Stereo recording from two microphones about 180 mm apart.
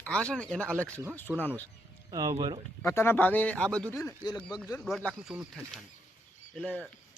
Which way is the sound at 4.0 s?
15° left (ahead or behind).